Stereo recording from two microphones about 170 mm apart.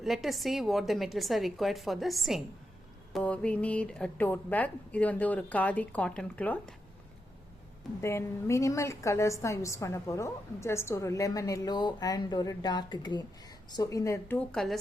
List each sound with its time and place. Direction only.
0.0 s a woman's voice: centre (ahead or behind)
8.0 s a woman's voice: 15° left (ahead or behind)